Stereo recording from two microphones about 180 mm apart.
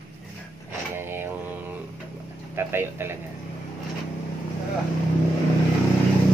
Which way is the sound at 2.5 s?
15° right (ahead or behind).